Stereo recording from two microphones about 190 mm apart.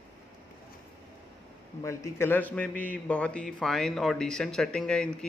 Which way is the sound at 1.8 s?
15° left (ahead or behind).